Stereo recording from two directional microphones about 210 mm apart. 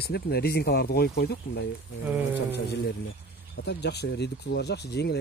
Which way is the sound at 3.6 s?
50° left (ahead or behind).